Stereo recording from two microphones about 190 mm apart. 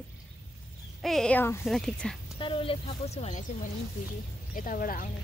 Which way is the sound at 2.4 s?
30° left (ahead or behind).